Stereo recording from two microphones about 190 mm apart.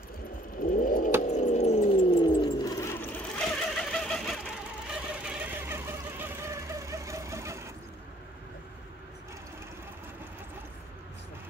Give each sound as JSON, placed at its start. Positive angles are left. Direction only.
{"t": 0.6, "sound": "vehicle", "side_deg": 45}